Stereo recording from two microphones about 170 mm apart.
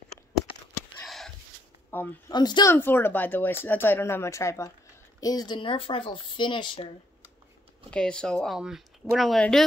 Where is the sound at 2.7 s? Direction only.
15° left (ahead or behind); by 6.9 s 30° left (ahead or behind).